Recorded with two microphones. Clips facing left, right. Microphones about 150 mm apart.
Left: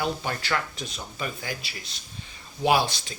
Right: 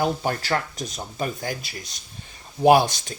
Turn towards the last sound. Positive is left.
turn(degrees=-45)  # may be behind; listen again after turning